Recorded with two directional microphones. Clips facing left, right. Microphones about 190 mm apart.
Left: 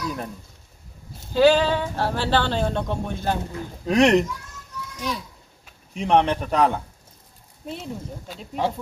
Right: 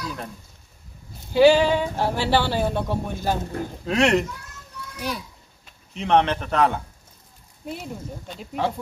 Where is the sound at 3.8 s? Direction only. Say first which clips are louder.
Left 3 dB; 15° left (ahead or behind).